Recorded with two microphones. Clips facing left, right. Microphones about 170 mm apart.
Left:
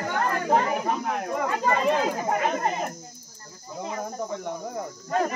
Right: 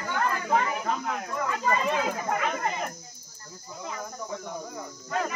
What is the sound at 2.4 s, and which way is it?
Speech, 40° left (ahead or behind).